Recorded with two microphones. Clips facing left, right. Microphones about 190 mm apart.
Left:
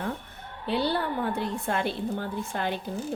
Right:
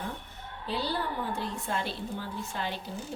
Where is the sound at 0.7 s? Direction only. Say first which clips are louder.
Left 5 dB; 65° left (ahead or behind).